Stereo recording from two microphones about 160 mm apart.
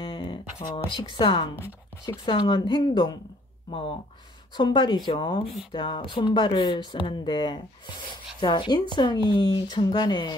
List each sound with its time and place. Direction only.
0.0 s speech: 30° left (ahead or behind)
4.6 s speech: 30° left (ahead or behind)